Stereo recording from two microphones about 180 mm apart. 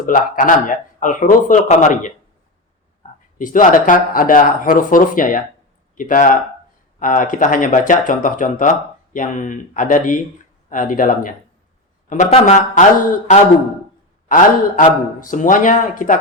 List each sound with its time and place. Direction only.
0.0 s speech: 50° left (ahead or behind)
3.3 s speech: 45° left (ahead or behind)